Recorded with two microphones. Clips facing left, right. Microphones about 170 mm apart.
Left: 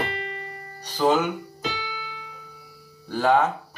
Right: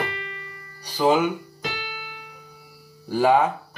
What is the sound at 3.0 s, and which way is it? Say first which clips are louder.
Speech: right 2 dB; 10° right (ahead or behind).